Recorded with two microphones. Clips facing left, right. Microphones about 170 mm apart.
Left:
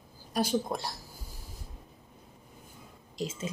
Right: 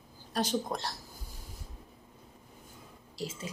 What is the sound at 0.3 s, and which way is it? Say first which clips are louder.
Speech: left 2 dB; 10° left (ahead or behind).